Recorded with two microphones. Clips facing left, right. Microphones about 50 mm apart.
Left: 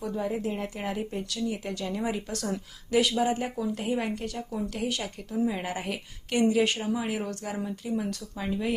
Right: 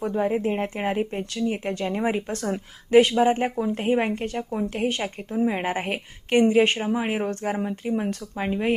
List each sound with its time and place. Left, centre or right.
0.0 s a woman's voice: right